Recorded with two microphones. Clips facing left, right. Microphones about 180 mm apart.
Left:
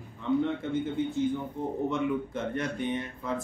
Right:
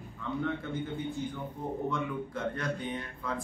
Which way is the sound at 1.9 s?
20° left (ahead or behind).